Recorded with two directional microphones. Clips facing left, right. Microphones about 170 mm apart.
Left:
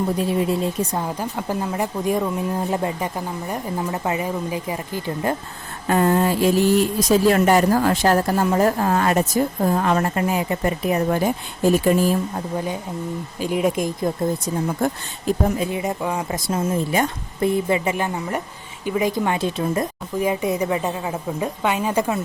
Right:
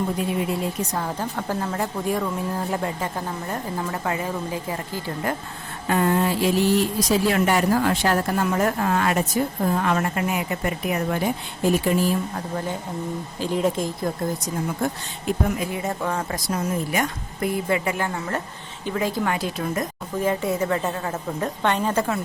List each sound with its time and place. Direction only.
0.2 s a woman's voice: 30° left (ahead or behind)
1.0 s speech: 15° left (ahead or behind)
5.9 s speech: 40° left (ahead or behind)
13.4 s speech: 15° left (ahead or behind)
15.3 s a woman's voice: 30° left (ahead or behind); by 16.4 s 15° left (ahead or behind)
16.5 s a woman's voice: 25° left (ahead or behind)
20.1 s speech: 15° left (ahead or behind)